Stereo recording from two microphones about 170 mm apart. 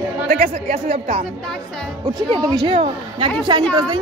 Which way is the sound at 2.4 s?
25° right (ahead or behind).